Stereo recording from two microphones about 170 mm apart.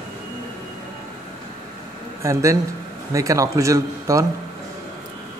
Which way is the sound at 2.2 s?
20° right (ahead or behind).